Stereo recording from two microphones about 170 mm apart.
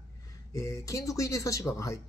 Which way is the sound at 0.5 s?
20° left (ahead or behind).